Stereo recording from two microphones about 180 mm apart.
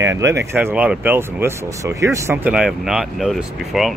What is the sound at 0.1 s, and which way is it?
Speech, 15° right (ahead or behind).